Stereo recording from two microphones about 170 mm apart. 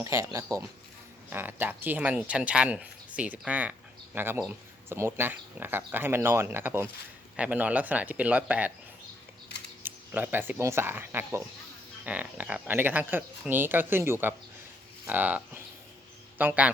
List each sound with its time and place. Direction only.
0.0 s speech: 20° right (ahead or behind)
9.8 s speech: 10° right (ahead or behind)